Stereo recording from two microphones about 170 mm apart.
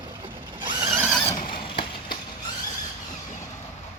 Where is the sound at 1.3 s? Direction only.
50° left (ahead or behind).